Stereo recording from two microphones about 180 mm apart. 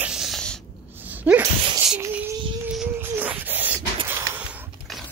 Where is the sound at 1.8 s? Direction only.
5° right (ahead or behind).